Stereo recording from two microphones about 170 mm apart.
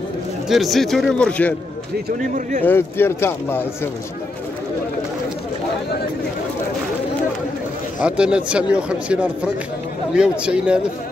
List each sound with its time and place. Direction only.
0.5 s speech: centre (ahead or behind)
2.0 s speech: 55° right (ahead or behind)
2.6 s speech: 10° left (ahead or behind)
8.0 s a man's voice: 5° right (ahead or behind)